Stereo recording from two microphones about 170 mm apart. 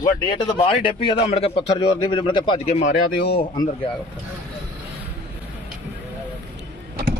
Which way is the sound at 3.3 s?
25° left (ahead or behind).